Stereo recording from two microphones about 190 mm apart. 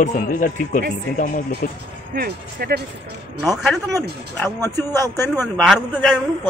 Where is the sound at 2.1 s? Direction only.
50° right (ahead or behind).